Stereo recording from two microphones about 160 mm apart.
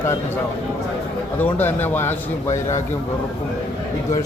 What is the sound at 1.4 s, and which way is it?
Speech, 10° left (ahead or behind).